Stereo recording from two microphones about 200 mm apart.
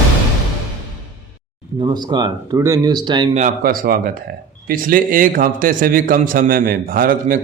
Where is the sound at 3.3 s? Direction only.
45° right (ahead or behind).